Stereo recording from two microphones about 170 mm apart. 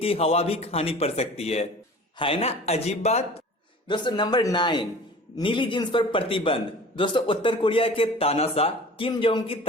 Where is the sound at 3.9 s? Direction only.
25° left (ahead or behind).